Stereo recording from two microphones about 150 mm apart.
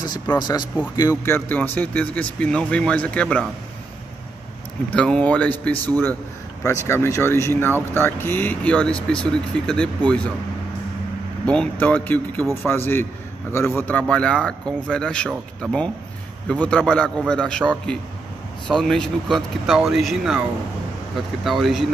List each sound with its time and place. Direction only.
0.4 s speech: 30° left (ahead or behind); by 3.4 s 10° left (ahead or behind)
4.9 s speech: 5° left (ahead or behind)
11.4 s speech: 10° left (ahead or behind)
21.5 s speech: centre (ahead or behind)